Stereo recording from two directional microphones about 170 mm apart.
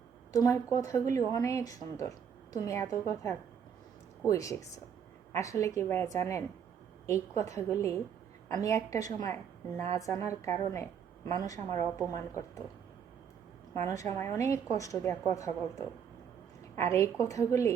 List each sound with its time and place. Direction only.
0.3 s a woman's voice: 20° left (ahead or behind)
13.7 s a woman's voice: 20° left (ahead or behind)